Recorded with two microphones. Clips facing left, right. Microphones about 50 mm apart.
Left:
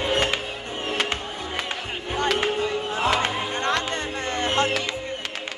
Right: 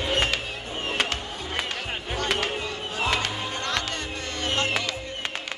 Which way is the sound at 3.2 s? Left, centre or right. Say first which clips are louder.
Left 5 dB; left.